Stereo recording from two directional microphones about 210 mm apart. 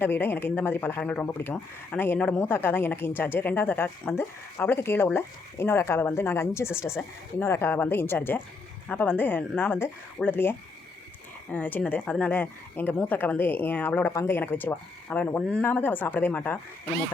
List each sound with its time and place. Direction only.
0.0 s speech: 10° left (ahead or behind)
11.5 s speech: 5° left (ahead or behind)